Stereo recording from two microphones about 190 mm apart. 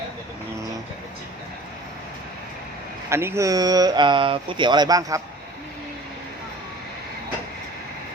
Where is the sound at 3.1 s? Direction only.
15° right (ahead or behind).